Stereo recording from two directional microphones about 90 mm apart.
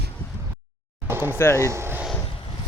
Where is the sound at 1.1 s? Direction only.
25° right (ahead or behind).